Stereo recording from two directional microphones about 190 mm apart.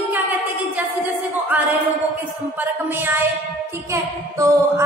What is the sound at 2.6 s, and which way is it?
A woman's voice, 10° right (ahead or behind).